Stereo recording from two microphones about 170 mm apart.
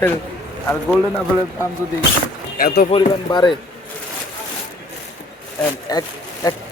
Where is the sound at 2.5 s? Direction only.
55° left (ahead or behind).